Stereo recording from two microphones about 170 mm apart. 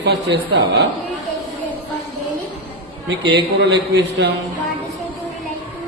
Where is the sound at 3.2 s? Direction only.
80° right.